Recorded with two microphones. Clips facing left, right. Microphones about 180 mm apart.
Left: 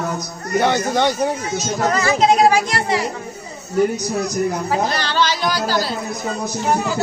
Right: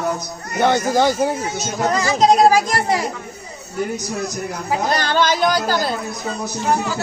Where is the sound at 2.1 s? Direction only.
40° right (ahead or behind).